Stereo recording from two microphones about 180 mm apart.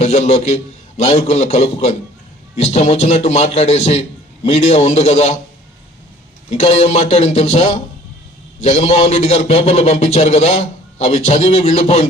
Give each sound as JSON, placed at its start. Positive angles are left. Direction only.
{"t": 0.0, "sound": "a man's voice", "side_deg": 35}
{"t": 6.5, "sound": "a man's voice", "side_deg": 35}